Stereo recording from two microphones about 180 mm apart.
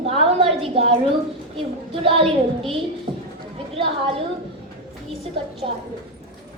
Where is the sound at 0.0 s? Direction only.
35° right (ahead or behind).